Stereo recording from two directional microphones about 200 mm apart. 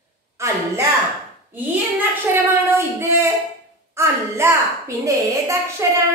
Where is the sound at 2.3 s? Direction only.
10° right (ahead or behind).